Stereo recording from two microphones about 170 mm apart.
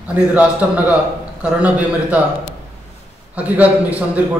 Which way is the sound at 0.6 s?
10° right (ahead or behind).